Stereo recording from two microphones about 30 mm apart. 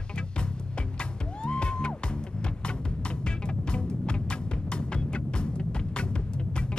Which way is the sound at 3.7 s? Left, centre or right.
Left.